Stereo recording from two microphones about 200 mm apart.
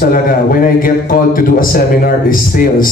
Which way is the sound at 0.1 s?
45° left (ahead or behind).